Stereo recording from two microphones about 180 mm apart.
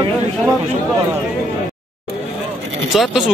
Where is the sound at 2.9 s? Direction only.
Centre (ahead or behind).